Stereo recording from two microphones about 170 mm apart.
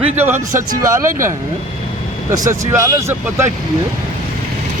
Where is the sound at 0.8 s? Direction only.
15° right (ahead or behind).